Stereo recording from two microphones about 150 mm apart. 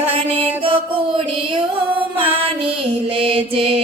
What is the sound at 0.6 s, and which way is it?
Mantra, 35° right (ahead or behind).